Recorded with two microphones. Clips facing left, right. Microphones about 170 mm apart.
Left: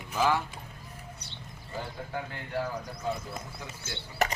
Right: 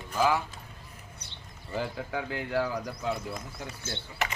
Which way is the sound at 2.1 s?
90° right.